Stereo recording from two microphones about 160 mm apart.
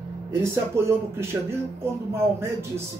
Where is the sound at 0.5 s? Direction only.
15° right (ahead or behind).